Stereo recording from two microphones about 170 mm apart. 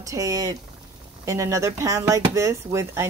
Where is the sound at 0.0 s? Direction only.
20° right (ahead or behind).